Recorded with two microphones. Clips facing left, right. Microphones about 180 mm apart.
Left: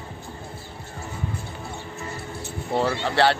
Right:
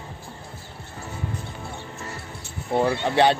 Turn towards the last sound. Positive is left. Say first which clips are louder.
# right 2 dB
turn(degrees=-15)  # may be behind; listen again after turning